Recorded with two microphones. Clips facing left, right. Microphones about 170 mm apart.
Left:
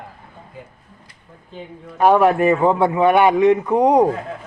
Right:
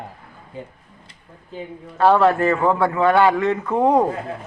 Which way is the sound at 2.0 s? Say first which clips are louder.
Left 2 dB; 15° left (ahead or behind).